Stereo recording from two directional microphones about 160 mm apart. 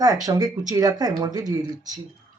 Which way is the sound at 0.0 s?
20° right (ahead or behind).